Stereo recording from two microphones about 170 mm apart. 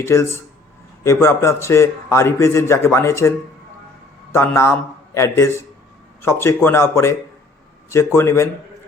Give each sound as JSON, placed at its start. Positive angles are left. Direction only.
{"t": 0.0, "sound": "a man's voice", "side_deg": 15}